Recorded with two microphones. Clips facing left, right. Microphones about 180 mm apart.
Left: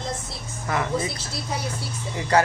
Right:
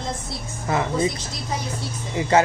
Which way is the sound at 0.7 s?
25° right (ahead or behind).